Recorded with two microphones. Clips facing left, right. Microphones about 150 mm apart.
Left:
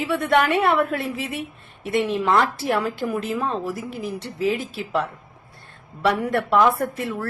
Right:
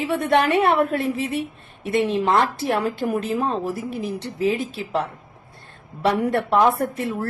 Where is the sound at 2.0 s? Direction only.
30° right (ahead or behind).